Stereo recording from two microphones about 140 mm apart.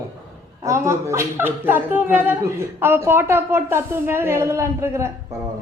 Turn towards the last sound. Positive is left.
turn(degrees=-20)  # may be behind; listen again after turning